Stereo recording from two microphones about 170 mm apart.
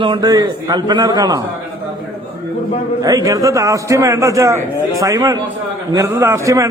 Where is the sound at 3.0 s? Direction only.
20° right (ahead or behind).